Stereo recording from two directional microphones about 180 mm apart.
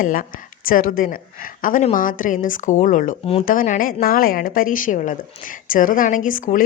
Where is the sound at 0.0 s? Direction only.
50° left (ahead or behind).